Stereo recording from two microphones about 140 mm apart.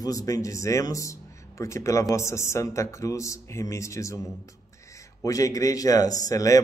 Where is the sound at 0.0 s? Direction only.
25° left (ahead or behind).